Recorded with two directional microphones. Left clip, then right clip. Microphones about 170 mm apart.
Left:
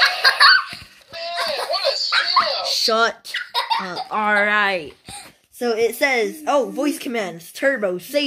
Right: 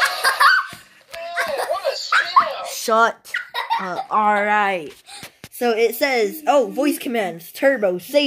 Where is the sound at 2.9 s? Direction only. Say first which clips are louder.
Right 5 dB; 5° right (ahead or behind).